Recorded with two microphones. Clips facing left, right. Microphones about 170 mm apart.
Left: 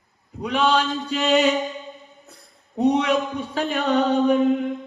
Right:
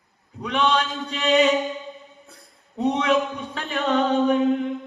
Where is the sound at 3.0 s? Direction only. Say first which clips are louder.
Even; 35° left (ahead or behind).